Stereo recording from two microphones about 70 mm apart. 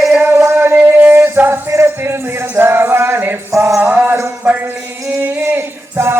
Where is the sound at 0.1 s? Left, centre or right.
Right.